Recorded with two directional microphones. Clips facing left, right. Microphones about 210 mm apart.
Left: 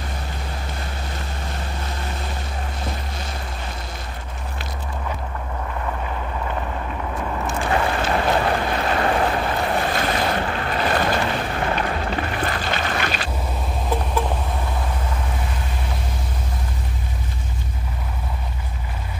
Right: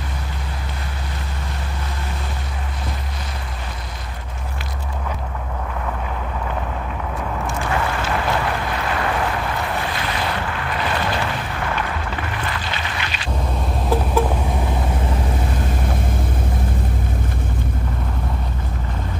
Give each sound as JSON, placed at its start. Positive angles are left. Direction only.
{"t": 7.7, "sound": "boat", "side_deg": 25}
{"t": 10.4, "sound": "boat", "side_deg": 30}
{"t": 11.6, "sound": "music", "side_deg": 30}